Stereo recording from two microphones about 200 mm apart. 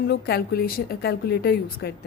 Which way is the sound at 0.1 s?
55° left (ahead or behind).